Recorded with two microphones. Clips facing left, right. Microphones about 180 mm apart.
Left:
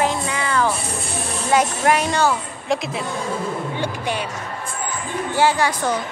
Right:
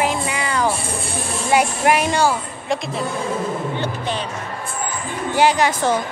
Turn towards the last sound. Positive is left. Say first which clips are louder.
# right 2 dB
turn(degrees=-20)  # may be behind; listen again after turning